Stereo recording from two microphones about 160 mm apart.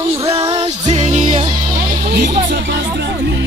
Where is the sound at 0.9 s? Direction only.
45° right (ahead or behind).